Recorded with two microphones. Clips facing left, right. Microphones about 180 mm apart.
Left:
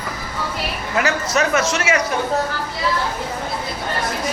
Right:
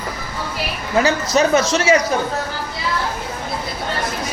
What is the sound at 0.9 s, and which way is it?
A man's voice, 30° right (ahead or behind).